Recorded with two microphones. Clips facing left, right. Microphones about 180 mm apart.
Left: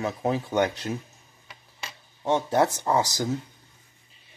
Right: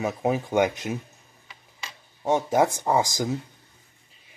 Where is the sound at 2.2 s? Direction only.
15° right (ahead or behind).